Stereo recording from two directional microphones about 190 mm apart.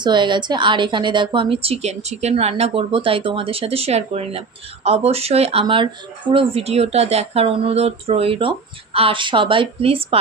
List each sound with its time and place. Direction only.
0.0 s a woman's voice: 25° right (ahead or behind)